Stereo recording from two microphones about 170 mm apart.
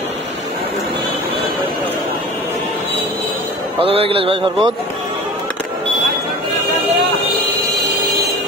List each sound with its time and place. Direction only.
3.8 s speech: 35° right (ahead or behind)